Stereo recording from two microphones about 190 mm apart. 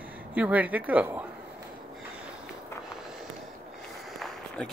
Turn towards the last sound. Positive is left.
turn(degrees=0)  # may be behind; listen again after turning